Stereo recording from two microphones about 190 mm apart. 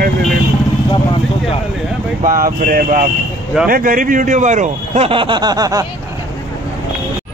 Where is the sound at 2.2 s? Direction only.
50° right (ahead or behind); by 5.8 s 20° right (ahead or behind).